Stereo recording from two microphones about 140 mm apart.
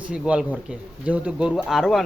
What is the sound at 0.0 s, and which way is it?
Speech, 5° right (ahead or behind).